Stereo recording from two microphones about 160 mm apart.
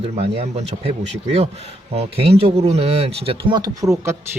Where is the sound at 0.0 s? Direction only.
40° right (ahead or behind).